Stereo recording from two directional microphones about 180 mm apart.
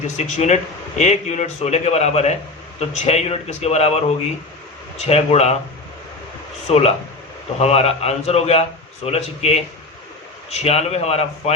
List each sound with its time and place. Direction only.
0.2 s speech: 40° left (ahead or behind)
6.7 s speech: 35° left (ahead or behind)